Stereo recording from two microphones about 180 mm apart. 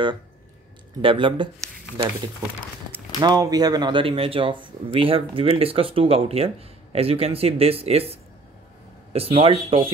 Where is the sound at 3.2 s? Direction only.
20° right (ahead or behind).